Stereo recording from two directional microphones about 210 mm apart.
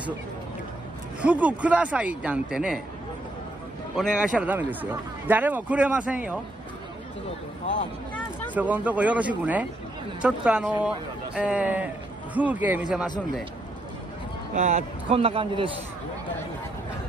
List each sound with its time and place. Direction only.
1.2 s a man's voice: 5° right (ahead or behind)
3.9 s a man's voice: 5° right (ahead or behind)
8.5 s a man's voice: 5° right (ahead or behind)
14.5 s a man's voice: 30° right (ahead or behind)